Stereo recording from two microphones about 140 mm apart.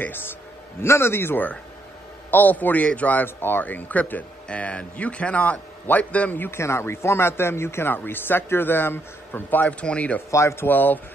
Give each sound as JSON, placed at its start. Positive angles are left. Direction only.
{"t": 0.7, "sound": "a man's voice", "side_deg": 20}